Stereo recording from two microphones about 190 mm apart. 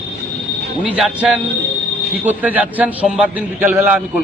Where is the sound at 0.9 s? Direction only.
5° right (ahead or behind).